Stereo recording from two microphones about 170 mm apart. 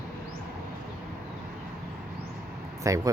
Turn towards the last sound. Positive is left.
turn(degrees=-20)  # may be behind; listen again after turning